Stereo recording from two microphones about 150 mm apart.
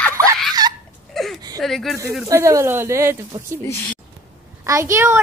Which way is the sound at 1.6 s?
Centre (ahead or behind).